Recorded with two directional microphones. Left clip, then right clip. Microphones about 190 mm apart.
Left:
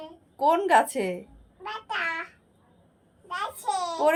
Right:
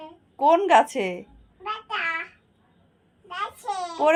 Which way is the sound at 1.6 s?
20° left (ahead or behind).